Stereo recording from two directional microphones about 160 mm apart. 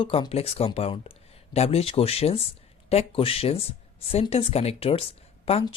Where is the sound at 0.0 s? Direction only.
35° left (ahead or behind).